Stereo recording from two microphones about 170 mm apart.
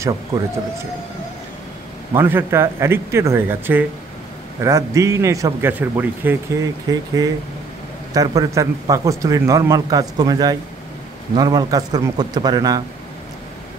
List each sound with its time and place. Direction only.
0.0 s a man's voice: 20° right (ahead or behind)
2.1 s a man's voice: 15° right (ahead or behind)